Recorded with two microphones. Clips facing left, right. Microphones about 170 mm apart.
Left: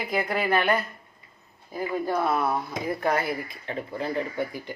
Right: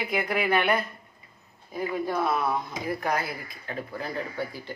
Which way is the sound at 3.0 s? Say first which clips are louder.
Left 7 dB; 25° left (ahead or behind).